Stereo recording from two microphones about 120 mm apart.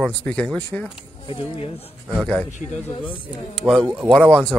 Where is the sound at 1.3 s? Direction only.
50° left (ahead or behind).